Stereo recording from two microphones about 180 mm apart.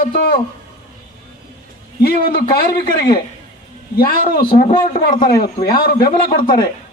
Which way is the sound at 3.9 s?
55° left (ahead or behind).